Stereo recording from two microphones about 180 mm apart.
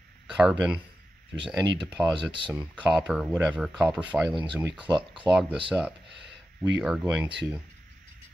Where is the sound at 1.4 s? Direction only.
25° right (ahead or behind).